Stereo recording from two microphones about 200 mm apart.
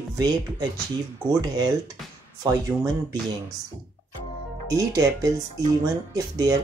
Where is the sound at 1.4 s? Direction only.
20° right (ahead or behind).